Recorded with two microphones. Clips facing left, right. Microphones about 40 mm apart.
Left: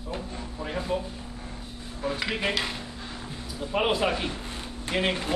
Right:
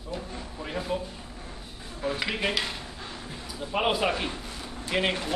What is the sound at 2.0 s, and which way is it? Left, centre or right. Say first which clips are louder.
A woman's voice: even; centre.